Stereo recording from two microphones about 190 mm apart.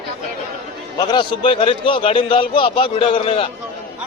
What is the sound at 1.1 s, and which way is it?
A man's voice, 25° left (ahead or behind).